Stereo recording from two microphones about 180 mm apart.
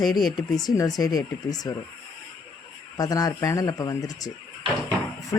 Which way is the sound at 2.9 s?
20° left (ahead or behind).